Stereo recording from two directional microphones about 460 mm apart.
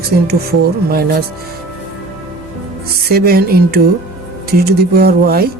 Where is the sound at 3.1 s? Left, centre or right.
Centre.